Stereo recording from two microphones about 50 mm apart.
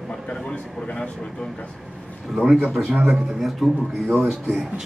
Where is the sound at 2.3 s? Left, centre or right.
Centre.